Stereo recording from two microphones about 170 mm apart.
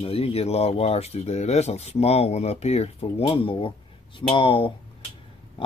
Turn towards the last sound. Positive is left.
turn(degrees=30)  # may be behind; listen again after turning